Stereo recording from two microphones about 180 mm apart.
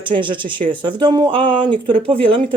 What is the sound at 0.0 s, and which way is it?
Speech, 25° right (ahead or behind).